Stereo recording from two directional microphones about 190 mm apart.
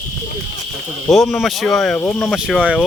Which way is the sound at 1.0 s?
Centre (ahead or behind).